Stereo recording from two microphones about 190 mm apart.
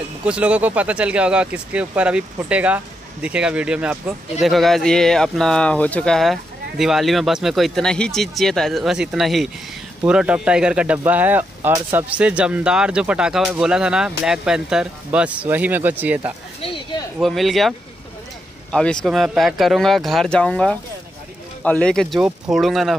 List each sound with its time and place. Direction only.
0.2 s speech: 5° right (ahead or behind)
16.6 s a sound: 25° left (ahead or behind)
17.2 s speech: centre (ahead or behind)